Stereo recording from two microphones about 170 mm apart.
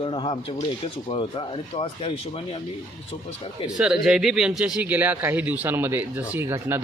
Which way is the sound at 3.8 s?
5° right (ahead or behind).